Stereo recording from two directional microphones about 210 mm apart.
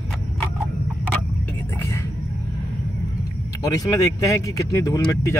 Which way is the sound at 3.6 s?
15° left (ahead or behind).